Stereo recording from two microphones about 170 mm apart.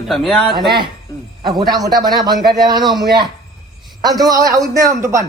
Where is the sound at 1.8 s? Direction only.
25° right (ahead or behind).